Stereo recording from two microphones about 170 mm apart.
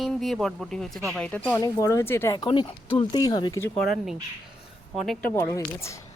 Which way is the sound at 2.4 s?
25° left (ahead or behind).